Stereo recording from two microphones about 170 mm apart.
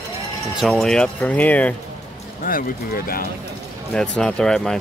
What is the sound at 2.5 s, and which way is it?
Speech, 55° left (ahead or behind).